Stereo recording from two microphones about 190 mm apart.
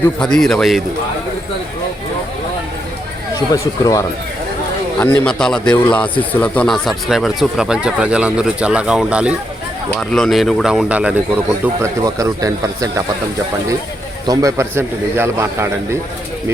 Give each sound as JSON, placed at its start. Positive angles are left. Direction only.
{"t": 0.2, "sound": "speech", "side_deg": 5}
{"t": 3.5, "sound": "a man's voice", "side_deg": 15}
{"t": 14.3, "sound": "a man's voice", "side_deg": -15}